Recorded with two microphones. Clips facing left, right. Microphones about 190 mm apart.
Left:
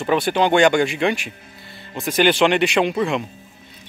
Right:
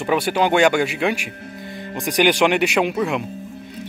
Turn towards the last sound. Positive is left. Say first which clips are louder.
# left 1 dB
turn(degrees=-5)  # may be behind; listen again after turning